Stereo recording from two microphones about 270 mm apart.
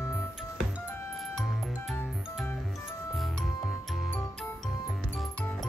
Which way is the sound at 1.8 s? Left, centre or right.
Centre.